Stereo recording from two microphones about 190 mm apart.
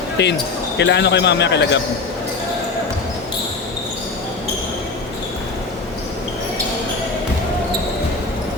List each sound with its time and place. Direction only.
0.2 s speech: 65° left (ahead or behind)